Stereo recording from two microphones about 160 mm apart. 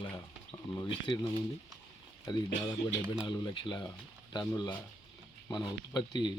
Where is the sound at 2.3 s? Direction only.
30° left (ahead or behind).